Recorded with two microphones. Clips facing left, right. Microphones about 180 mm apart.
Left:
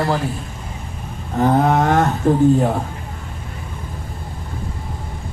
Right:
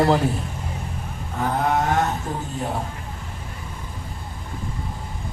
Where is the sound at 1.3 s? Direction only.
45° left (ahead or behind).